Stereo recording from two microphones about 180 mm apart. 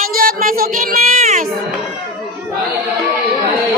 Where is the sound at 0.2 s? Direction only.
50° right (ahead or behind).